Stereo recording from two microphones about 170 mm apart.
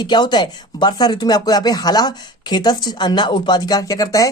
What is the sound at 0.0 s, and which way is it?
Speech, 25° left (ahead or behind).